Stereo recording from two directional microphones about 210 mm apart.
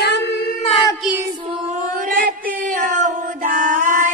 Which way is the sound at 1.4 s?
35° right (ahead or behind).